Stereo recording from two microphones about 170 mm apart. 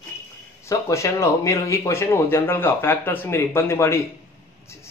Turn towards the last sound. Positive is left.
turn(degrees=15)  # may be behind; listen again after turning